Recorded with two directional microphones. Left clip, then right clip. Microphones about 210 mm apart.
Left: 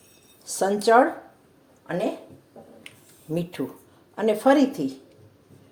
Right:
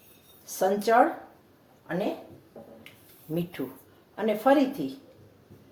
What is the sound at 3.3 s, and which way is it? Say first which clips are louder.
Speech: left 4 dB; 35° left (ahead or behind).